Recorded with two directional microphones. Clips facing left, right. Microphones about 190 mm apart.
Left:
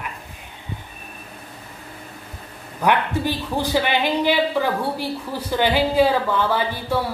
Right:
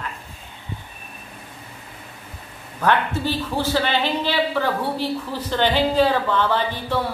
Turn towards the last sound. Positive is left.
turn(degrees=10)  # may be behind; listen again after turning